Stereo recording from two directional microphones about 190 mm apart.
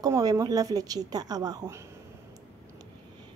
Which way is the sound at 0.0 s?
20° right (ahead or behind).